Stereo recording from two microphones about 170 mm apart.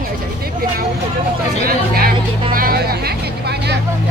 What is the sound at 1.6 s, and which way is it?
Speech, 60° right (ahead or behind).